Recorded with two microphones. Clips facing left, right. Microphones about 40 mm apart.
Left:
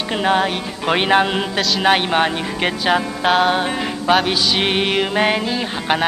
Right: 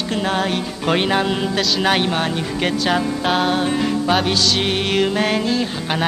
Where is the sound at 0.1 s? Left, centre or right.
Centre.